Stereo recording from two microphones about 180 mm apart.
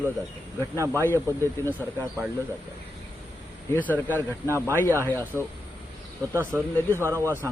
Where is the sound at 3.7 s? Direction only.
10° left (ahead or behind).